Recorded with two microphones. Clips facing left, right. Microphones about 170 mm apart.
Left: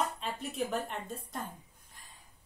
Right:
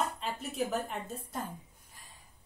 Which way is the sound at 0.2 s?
Centre (ahead or behind).